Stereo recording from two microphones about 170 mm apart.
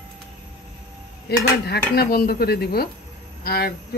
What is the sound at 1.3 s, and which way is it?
Speech, 65° left (ahead or behind).